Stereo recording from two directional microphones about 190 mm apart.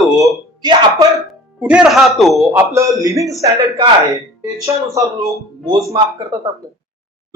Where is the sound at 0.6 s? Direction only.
20° right (ahead or behind).